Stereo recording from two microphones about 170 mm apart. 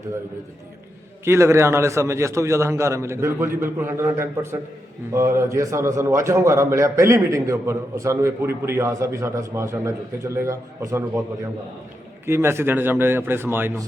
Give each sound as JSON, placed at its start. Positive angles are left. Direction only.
{"t": 1.2, "sound": "a man's voice", "side_deg": -15}
{"t": 12.2, "sound": "a man's voice", "side_deg": -15}